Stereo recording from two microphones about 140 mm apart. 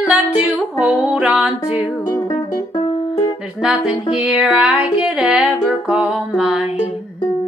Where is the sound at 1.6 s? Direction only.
30° left (ahead or behind).